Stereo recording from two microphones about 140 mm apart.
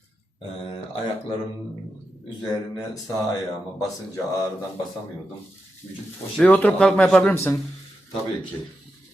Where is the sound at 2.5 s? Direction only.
30° left (ahead or behind).